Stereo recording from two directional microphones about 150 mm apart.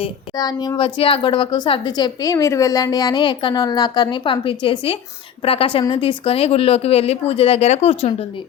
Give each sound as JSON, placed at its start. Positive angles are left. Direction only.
{"t": 0.0, "sound": "a woman's voice", "side_deg": 25}